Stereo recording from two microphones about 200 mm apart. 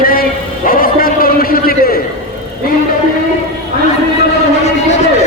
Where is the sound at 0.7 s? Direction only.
45° left (ahead or behind).